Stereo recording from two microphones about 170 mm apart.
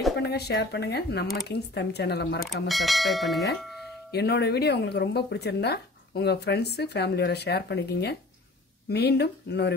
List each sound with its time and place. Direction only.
0.2 s speech: 75° left (ahead or behind)
2.7 s speech: centre (ahead or behind)
4.1 s speech: 75° left (ahead or behind)